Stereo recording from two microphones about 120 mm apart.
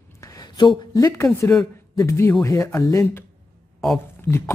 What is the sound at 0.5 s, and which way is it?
A man's voice, 35° left (ahead or behind).